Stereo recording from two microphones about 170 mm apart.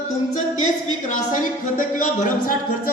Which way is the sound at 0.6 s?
45° left (ahead or behind).